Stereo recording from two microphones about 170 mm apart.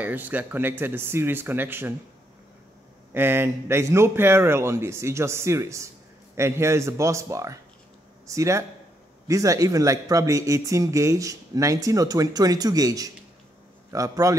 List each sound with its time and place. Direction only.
0.0 s speech: 10° right (ahead or behind)
3.1 s speech: 15° right (ahead or behind)